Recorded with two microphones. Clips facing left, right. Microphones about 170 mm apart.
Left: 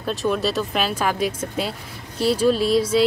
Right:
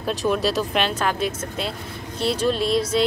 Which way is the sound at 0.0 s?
Centre (ahead or behind).